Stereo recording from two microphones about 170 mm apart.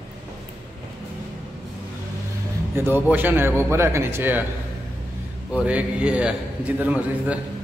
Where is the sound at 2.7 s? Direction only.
10° right (ahead or behind).